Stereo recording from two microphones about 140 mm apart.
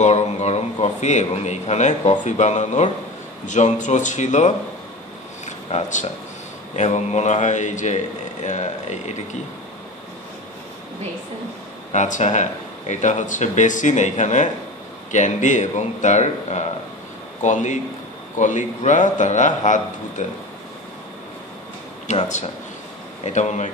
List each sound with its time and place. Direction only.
0.0 s a man's voice: 55° left (ahead or behind)
5.4 s a sound: 60° left (ahead or behind)
6.7 s a man's voice: 55° left (ahead or behind)
11.9 s a man's voice: 60° left (ahead or behind)
22.0 s a man's voice: 55° left (ahead or behind)